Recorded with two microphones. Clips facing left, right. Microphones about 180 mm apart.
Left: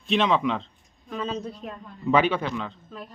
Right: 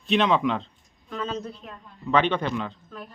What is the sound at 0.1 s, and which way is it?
A man's voice, centre (ahead or behind).